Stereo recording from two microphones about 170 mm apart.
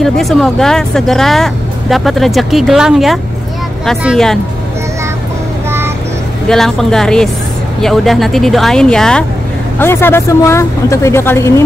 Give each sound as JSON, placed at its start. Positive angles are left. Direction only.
{"t": 0.0, "sound": "speech", "side_deg": 0}
{"t": 6.5, "sound": "speech", "side_deg": 0}